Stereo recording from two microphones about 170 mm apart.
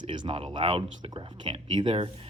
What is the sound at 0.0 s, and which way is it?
Speech, 30° right (ahead or behind).